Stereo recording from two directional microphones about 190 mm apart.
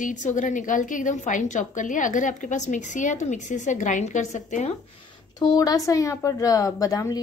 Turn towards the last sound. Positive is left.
turn(degrees=20)  # may be behind; listen again after turning